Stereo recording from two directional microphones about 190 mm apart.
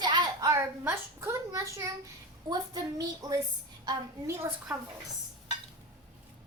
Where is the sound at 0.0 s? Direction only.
20° right (ahead or behind).